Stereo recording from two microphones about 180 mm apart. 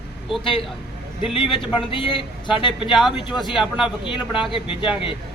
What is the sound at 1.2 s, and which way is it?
Speech, 30° left (ahead or behind).